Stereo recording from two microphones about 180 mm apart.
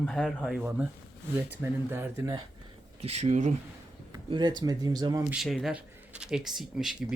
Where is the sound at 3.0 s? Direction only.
35° right (ahead or behind).